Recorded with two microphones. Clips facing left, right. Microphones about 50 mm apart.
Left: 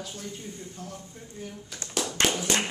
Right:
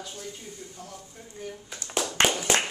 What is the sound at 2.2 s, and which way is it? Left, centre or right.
Clapping, right.